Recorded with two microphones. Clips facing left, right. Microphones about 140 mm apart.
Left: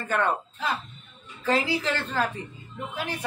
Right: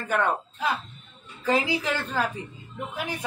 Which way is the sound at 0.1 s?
10° right (ahead or behind).